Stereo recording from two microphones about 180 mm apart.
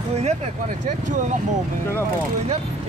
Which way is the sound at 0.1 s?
40° right (ahead or behind).